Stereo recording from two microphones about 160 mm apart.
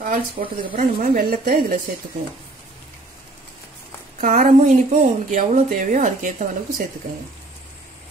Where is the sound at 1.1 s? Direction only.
75° right (ahead or behind).